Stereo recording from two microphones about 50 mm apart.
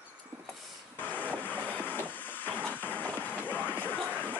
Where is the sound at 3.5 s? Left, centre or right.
Left.